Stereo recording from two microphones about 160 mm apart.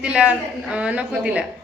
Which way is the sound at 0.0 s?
10° right (ahead or behind).